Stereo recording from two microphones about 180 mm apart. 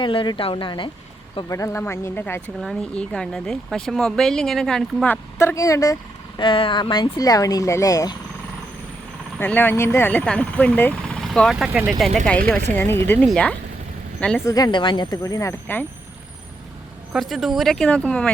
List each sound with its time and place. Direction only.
0.0 s speech: 25° left (ahead or behind)
9.4 s speech: 10° left (ahead or behind)
12.6 s speech: 10° left (ahead or behind)
14.4 s speech: 20° left (ahead or behind)
17.1 s speech: centre (ahead or behind)